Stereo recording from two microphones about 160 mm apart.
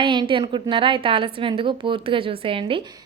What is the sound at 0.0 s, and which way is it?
A woman's voice, 30° right (ahead or behind).